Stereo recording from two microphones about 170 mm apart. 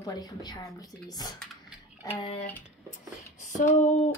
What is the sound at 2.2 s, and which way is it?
Speech, 35° left (ahead or behind).